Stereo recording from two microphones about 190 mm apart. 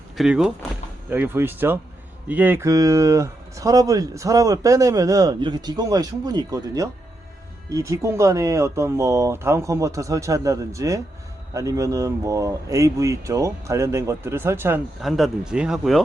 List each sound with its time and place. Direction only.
0.2 s speech: 5° right (ahead or behind)
15.0 s speech: centre (ahead or behind)